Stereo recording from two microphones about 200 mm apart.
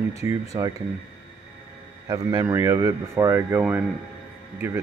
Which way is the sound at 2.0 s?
15° right (ahead or behind).